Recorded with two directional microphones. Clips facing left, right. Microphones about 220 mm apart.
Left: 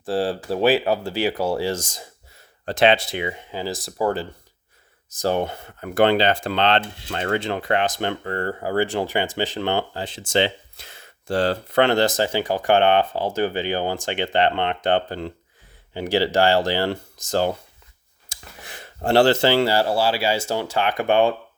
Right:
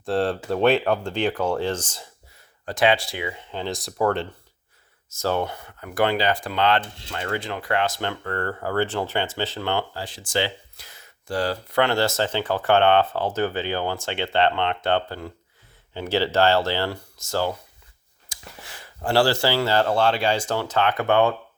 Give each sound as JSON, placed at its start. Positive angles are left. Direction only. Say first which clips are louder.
{"t": 0.0, "sound": "speech", "louder": "even", "side_deg": 0}
{"t": 2.6, "sound": "speech", "louder": "left 3 dB", "side_deg": 25}
{"t": 3.5, "sound": "speech", "louder": "left 1 dB", "side_deg": 5}
{"t": 5.0, "sound": "speech", "louder": "left 2 dB", "side_deg": 15}
{"t": 19.7, "sound": "speech", "louder": "even", "side_deg": 10}